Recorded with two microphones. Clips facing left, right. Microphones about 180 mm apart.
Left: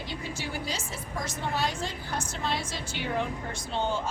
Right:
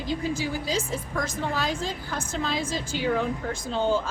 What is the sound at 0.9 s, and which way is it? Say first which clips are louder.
A woman's voice: right 6 dB; 90° right.